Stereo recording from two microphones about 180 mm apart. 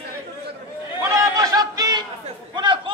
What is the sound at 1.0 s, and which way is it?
Chatter, 20° right (ahead or behind).